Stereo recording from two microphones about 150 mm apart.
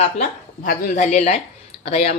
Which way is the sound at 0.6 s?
65° left (ahead or behind).